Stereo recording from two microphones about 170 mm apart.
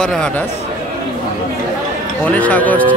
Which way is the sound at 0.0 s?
5° left (ahead or behind).